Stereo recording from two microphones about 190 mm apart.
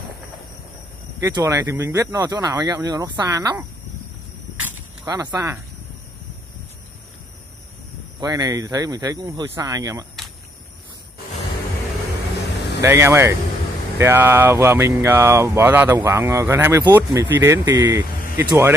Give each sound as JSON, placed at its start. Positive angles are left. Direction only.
{"t": 1.2, "sound": "speech", "side_deg": -15}
{"t": 5.0, "sound": "speech", "side_deg": -15}
{"t": 8.2, "sound": "speech", "side_deg": -20}
{"t": 12.8, "sound": "speech", "side_deg": -10}